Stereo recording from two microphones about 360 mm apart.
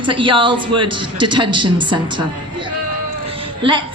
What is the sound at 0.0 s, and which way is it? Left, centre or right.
A woman's voice, centre.